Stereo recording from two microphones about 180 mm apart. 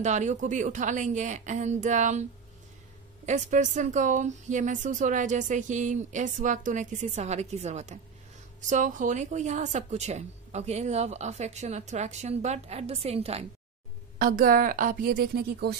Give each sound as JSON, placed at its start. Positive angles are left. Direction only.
{"t": 0.0, "sound": "a woman's voice", "side_deg": -40}
{"t": 3.3, "sound": "a woman's voice", "side_deg": -40}
{"t": 14.1, "sound": "a woman's voice", "side_deg": -50}